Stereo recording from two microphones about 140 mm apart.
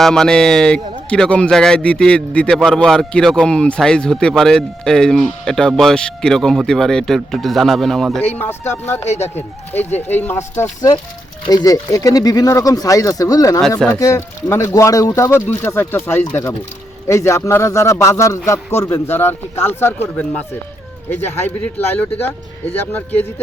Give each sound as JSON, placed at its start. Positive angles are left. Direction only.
{"t": 0.0, "sound": "a man's voice", "side_deg": 5}
{"t": 9.0, "sound": "speech", "side_deg": 50}
{"t": 9.3, "sound": "speech", "side_deg": 15}
{"t": 13.6, "sound": "a man's voice", "side_deg": 5}
{"t": 14.0, "sound": "speech", "side_deg": 20}